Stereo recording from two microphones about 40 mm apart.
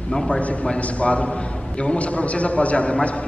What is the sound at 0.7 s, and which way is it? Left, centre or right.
A man's voice, left.